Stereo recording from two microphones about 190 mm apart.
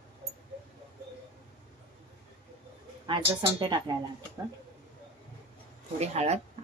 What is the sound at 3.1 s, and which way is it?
Speech, 30° right (ahead or behind).